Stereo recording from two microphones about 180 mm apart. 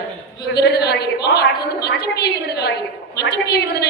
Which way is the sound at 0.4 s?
65° left (ahead or behind).